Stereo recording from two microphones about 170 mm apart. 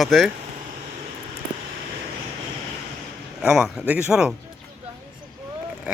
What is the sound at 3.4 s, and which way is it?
Speech, 5° right (ahead or behind).